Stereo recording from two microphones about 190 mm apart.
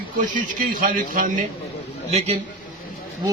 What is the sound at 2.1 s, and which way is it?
Speech, 35° right (ahead or behind).